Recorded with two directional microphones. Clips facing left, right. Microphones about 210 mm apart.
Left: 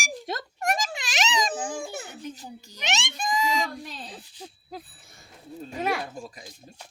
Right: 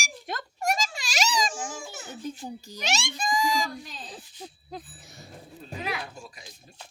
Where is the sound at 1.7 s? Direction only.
55° left (ahead or behind).